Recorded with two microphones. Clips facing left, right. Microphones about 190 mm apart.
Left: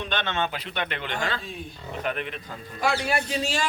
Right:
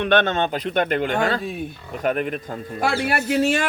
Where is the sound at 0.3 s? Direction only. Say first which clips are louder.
Right 7 dB; 40° right (ahead or behind).